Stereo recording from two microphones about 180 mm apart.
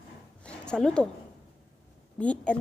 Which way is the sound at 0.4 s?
5° left (ahead or behind).